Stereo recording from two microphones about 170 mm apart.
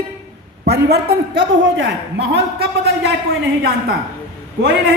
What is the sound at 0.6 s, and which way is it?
A man's voice, 80° right.